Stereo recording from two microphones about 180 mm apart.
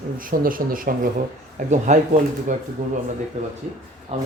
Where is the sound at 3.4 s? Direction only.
40° right (ahead or behind).